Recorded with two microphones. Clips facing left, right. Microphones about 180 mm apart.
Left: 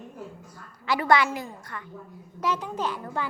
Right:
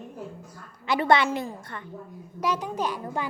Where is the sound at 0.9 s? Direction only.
25° right (ahead or behind).